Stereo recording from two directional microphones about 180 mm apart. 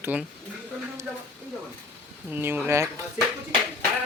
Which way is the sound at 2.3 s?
10° right (ahead or behind).